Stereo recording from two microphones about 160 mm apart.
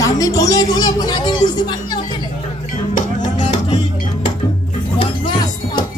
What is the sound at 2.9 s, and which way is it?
Music, 50° left (ahead or behind).